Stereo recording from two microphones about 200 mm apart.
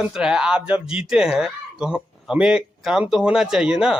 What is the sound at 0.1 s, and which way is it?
Speech, 5° right (ahead or behind).